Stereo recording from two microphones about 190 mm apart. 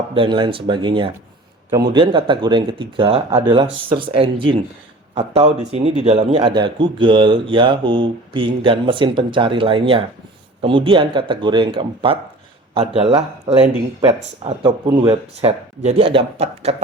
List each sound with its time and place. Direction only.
0.1 s a man's voice: 25° right (ahead or behind)
14.4 s speech: 25° right (ahead or behind)